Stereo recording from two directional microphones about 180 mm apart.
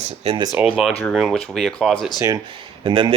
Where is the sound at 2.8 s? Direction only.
30° right (ahead or behind).